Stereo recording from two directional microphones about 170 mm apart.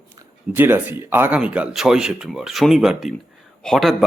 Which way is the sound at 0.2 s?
10° right (ahead or behind).